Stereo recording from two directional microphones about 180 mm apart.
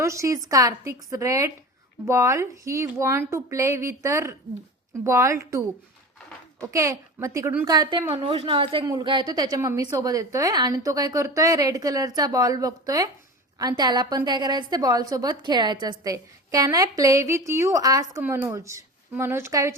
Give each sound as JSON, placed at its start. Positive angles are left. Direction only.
{"t": 0.0, "sound": "a woman's voice", "side_deg": -15}